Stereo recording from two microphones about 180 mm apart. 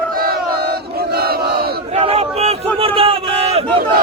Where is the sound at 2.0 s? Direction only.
35° right (ahead or behind).